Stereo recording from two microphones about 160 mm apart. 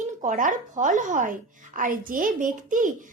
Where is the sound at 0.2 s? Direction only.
55° right (ahead or behind).